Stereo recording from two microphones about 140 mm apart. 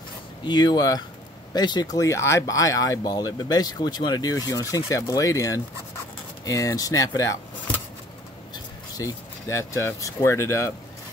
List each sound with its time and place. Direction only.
0.5 s speech: 30° left (ahead or behind)
8.9 s speech: 20° left (ahead or behind)